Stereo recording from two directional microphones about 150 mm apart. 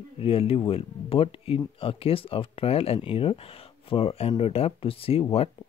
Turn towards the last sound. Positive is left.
turn(degrees=40)  # may be behind; listen again after turning